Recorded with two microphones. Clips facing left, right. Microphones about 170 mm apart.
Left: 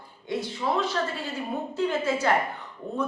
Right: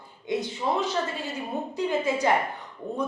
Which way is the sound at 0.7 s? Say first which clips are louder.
Even; 20° right (ahead or behind).